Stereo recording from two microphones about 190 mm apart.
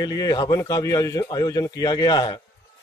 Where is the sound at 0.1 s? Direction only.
20° left (ahead or behind).